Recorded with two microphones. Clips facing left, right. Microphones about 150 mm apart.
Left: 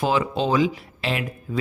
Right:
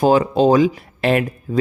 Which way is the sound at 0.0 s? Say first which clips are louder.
Right 8 dB; 45° right (ahead or behind).